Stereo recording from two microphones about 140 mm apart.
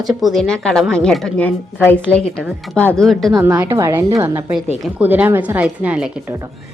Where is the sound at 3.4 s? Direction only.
15° right (ahead or behind).